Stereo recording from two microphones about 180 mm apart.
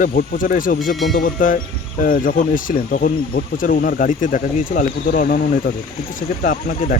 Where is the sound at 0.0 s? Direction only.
50° left (ahead or behind).